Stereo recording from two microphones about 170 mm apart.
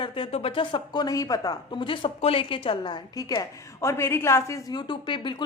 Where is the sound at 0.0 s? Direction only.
30° left (ahead or behind).